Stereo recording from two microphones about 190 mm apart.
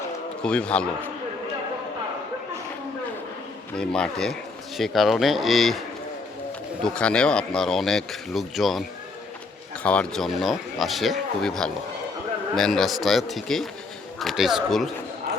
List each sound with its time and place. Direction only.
0.4 s speech: 5° left (ahead or behind)
3.8 s speech: 5° left (ahead or behind)
6.8 s speech: 5° left (ahead or behind)
9.8 s speech: 5° left (ahead or behind)